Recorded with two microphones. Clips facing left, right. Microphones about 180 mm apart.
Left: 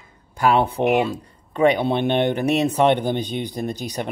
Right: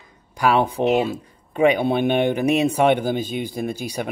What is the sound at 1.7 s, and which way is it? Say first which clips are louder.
Speech: right 1 dB; 10° right (ahead or behind).